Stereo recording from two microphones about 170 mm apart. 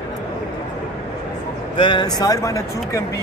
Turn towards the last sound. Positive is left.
turn(degrees=20)  # may be behind; listen again after turning